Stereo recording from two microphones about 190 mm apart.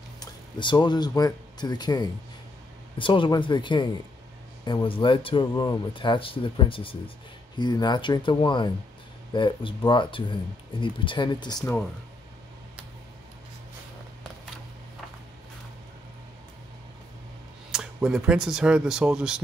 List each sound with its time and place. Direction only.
0.2 s speech: 25° left (ahead or behind)
17.6 s speech: 5° right (ahead or behind)